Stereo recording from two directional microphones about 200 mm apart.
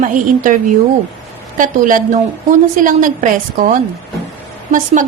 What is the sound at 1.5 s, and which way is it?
A woman's voice, 40° right (ahead or behind).